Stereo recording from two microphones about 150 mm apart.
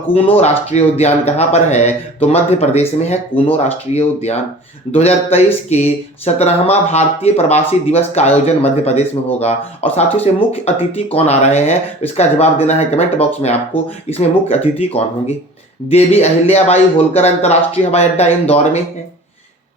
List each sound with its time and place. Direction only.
0.1 s speech: 40° left (ahead or behind)